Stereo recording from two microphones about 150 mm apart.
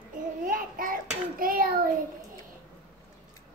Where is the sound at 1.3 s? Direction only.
70° right (ahead or behind).